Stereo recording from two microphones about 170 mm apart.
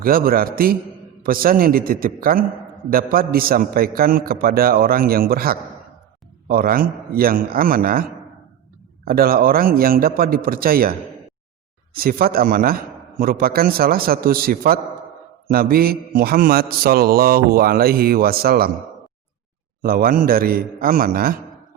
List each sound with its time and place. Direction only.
0.0 s mantra: 60° right (ahead or behind)
9.0 s mantra: 60° right (ahead or behind)
11.9 s mantra: 60° right (ahead or behind)
19.8 s mantra: 60° right (ahead or behind)